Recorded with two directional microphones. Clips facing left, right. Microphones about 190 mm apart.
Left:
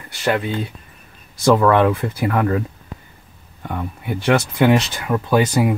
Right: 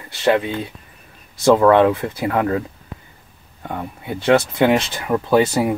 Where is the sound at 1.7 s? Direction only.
20° right (ahead or behind).